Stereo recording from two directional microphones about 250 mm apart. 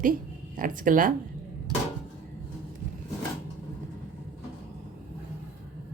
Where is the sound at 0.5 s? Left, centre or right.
Right.